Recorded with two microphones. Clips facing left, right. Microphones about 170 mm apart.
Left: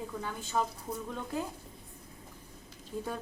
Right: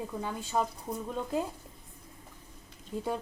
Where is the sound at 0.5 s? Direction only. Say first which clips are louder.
Right 1 dB; 20° right (ahead or behind).